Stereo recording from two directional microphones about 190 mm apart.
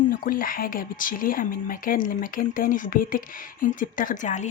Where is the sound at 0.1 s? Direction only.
50° left (ahead or behind).